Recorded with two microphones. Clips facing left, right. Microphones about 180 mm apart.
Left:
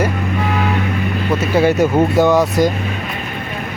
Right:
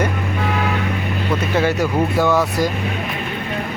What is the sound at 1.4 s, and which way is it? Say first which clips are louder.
Speech: left 6 dB; 10° left (ahead or behind).